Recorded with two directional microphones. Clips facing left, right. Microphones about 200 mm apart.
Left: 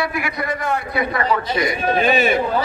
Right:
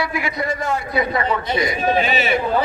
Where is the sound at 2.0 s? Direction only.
50° left (ahead or behind).